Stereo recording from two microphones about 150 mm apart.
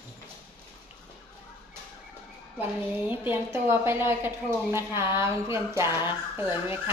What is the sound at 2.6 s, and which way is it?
A woman's voice, 15° right (ahead or behind).